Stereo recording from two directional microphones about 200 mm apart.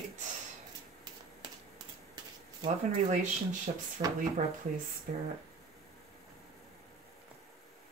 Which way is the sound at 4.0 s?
35° right (ahead or behind).